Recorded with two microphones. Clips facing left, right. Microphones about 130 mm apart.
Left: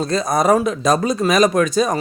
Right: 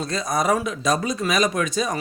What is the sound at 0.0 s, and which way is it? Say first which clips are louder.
Speech: left 6 dB; 40° left (ahead or behind).